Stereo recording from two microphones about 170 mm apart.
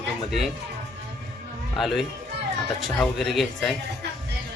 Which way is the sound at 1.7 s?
Centre (ahead or behind).